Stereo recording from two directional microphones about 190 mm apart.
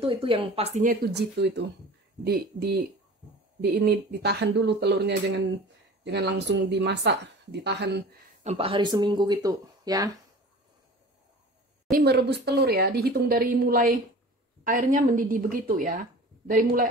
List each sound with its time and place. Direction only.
0.0 s speech: 30° right (ahead or behind)
1.0 s speech: 60° right (ahead or behind)
8.5 s speech: 30° right (ahead or behind)
11.9 s speech: 55° right (ahead or behind)